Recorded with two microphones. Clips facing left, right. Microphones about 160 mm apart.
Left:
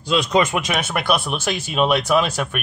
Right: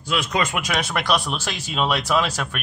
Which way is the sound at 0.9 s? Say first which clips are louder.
Left 2 dB; 5° left (ahead or behind).